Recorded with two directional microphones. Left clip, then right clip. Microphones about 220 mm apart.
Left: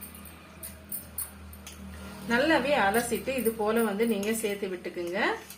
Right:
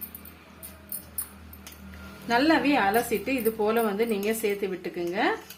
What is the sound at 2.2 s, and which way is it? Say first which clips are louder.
Speech: right 2 dB; 40° right (ahead or behind).